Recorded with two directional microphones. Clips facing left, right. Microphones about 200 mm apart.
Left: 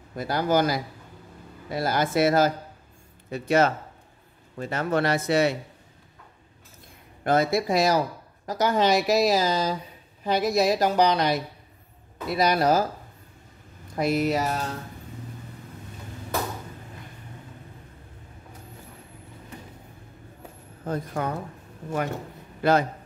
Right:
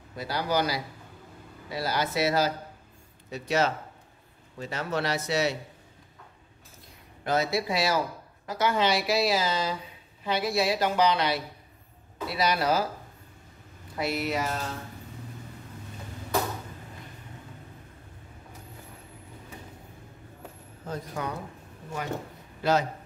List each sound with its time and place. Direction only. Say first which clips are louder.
0.1 s speech: left 5 dB; 50° left (ahead or behind)
7.2 s speech: left 5 dB; 50° left (ahead or behind)
13.9 s speech: left 6 dB; 40° left (ahead or behind)
20.8 s speech: left 5 dB; 55° left (ahead or behind)
22.6 s a man's voice: left 4 dB; 55° left (ahead or behind)